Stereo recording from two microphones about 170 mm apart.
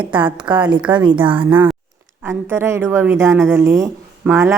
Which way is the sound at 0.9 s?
25° right (ahead or behind).